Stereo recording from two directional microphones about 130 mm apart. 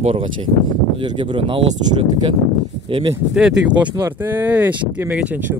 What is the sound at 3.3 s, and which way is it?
Speech, 5° right (ahead or behind).